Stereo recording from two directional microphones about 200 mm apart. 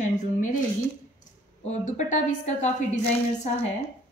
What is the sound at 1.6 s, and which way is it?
A woman's voice, 35° left (ahead or behind).